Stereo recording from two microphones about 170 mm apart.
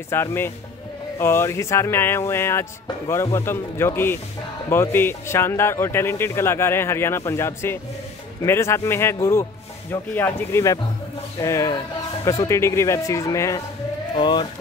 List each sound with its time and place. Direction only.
0.1 s speech: 15° left (ahead or behind)